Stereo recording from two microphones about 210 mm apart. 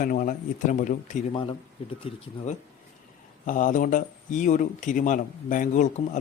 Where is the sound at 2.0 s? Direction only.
35° left (ahead or behind).